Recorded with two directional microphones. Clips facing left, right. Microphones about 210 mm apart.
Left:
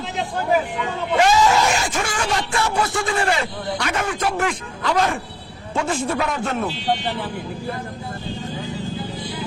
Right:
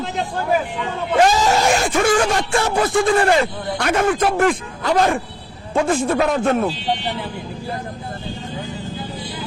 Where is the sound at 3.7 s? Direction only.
50° right (ahead or behind).